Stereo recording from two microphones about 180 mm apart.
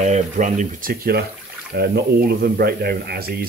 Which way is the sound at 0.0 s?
40° right (ahead or behind).